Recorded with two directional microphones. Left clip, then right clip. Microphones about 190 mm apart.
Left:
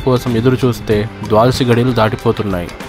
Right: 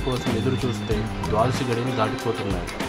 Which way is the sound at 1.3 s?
35° left (ahead or behind).